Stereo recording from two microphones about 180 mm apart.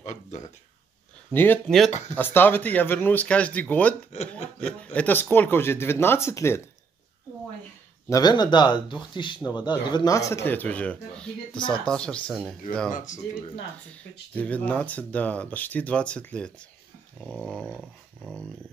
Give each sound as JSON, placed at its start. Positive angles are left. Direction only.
{"t": 0.0, "sound": "a sound", "side_deg": 40}
{"t": 1.3, "sound": "speech", "side_deg": 10}
{"t": 1.9, "sound": "speech", "side_deg": 40}
{"t": 2.1, "sound": "speech", "side_deg": 10}
{"t": 4.1, "sound": "speech", "side_deg": 40}
{"t": 4.6, "sound": "speech", "side_deg": 5}
{"t": 8.1, "sound": "speech", "side_deg": 25}
{"t": 12.9, "sound": "speech", "side_deg": 45}
{"t": 13.9, "sound": "speech", "side_deg": 10}
{"t": 17.6, "sound": "dog", "side_deg": -5}